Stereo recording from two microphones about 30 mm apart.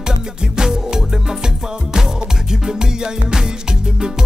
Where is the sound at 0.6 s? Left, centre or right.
Right.